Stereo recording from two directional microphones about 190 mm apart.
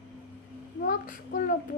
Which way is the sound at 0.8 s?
45° left (ahead or behind).